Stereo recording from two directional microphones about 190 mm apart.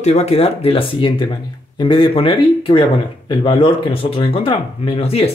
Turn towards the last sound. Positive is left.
turn(degrees=30)  # may be behind; listen again after turning